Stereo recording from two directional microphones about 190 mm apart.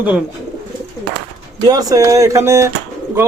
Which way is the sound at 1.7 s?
20° right (ahead or behind).